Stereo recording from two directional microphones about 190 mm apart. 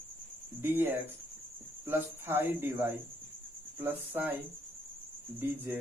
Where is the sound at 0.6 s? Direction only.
10° right (ahead or behind).